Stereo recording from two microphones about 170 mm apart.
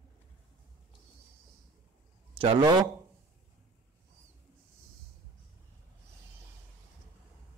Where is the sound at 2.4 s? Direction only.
30° right (ahead or behind).